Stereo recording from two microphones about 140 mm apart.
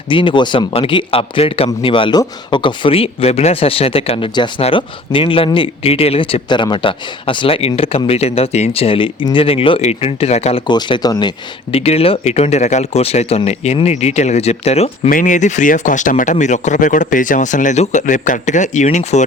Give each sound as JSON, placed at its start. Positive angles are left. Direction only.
{"t": 0.1, "sound": "a man's voice", "side_deg": 35}
{"t": 10.7, "sound": "a man's voice", "side_deg": 35}
{"t": 11.8, "sound": "speech", "side_deg": 45}
{"t": 15.1, "sound": "speech", "side_deg": 65}